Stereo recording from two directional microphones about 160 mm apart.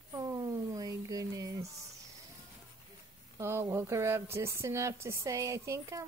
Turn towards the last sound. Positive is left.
turn(degrees=-20)  # may be behind; listen again after turning